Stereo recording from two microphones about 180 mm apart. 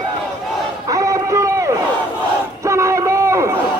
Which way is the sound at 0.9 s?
15° right (ahead or behind).